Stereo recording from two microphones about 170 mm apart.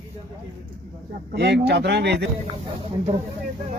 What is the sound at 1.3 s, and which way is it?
Speech, 80° right.